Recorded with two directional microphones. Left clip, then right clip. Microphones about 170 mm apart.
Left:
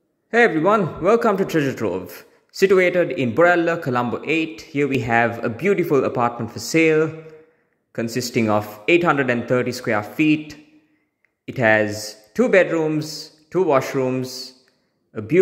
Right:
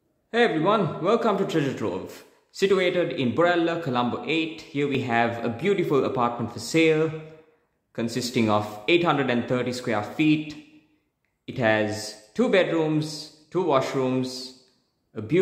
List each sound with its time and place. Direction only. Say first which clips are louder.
0.3 s a man's voice: left 5 dB; 30° left (ahead or behind)